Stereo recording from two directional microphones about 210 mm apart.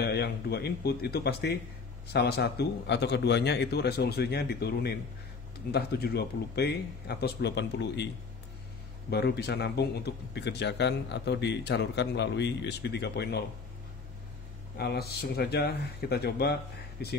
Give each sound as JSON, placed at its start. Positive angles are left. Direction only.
{"t": 0.0, "sound": "a man's voice", "side_deg": 50}
{"t": 9.1, "sound": "a man's voice", "side_deg": 50}
{"t": 14.8, "sound": "a man's voice", "side_deg": 50}